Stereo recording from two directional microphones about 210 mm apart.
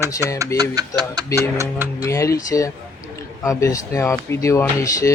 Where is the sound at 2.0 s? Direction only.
15° left (ahead or behind).